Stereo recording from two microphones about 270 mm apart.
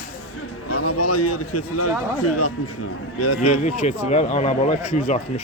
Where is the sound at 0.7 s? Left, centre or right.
Left.